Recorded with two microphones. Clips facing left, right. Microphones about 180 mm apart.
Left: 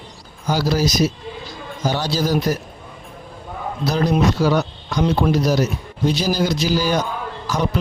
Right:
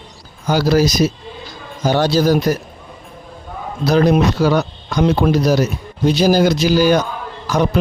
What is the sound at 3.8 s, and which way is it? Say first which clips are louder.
Speech: right 5 dB; 60° right (ahead or behind).